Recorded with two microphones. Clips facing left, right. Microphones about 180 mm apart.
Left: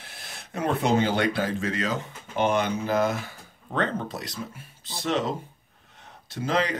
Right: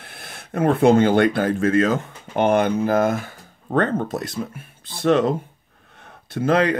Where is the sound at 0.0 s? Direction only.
55° right (ahead or behind).